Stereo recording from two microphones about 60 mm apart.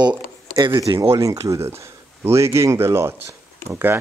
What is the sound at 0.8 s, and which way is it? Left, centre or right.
Speech, right.